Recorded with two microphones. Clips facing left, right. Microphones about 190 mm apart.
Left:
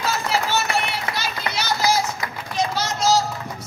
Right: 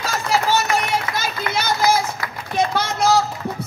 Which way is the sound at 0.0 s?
45° right (ahead or behind).